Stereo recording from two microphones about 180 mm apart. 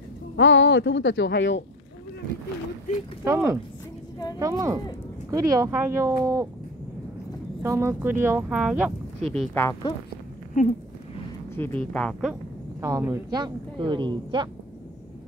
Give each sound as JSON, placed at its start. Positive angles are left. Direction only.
{"t": 0.4, "sound": "speech", "side_deg": 90}
{"t": 3.3, "sound": "speech", "side_deg": -15}
{"t": 7.6, "sound": "speech", "side_deg": -15}
{"t": 9.3, "sound": "speech", "side_deg": 10}
{"t": 10.6, "sound": "speech", "side_deg": 45}
{"t": 11.5, "sound": "speech", "side_deg": 10}
{"t": 12.8, "sound": "speech", "side_deg": -15}
{"t": 13.4, "sound": "speech", "side_deg": -25}